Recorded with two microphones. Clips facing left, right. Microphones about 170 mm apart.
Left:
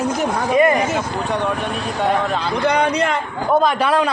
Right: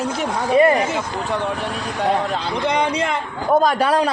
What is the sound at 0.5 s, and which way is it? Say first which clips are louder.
Speech: right 1 dB; 30° right (ahead or behind).